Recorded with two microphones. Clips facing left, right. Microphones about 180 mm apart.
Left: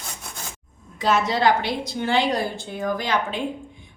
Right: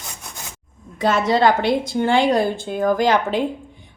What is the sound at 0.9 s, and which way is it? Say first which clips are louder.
A woman's voice: right 4 dB; 55° right (ahead or behind).